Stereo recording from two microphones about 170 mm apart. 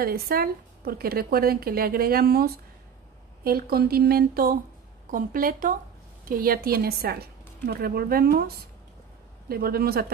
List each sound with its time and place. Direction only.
0.0 s a woman's voice: 60° right (ahead or behind)